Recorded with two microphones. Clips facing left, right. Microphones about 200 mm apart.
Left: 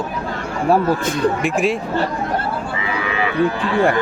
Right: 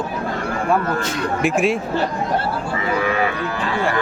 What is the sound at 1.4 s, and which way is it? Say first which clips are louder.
Speech: even; centre (ahead or behind).